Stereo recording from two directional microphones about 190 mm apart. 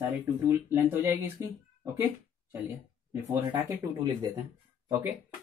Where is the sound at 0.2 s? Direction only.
10° right (ahead or behind).